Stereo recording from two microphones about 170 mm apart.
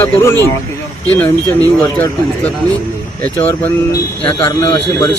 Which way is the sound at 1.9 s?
10° left (ahead or behind).